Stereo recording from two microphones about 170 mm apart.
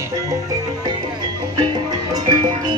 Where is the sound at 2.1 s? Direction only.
25° right (ahead or behind).